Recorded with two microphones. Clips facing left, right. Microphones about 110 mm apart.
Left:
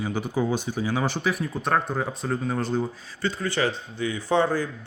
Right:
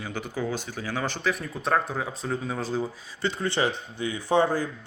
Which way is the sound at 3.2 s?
20° right (ahead or behind).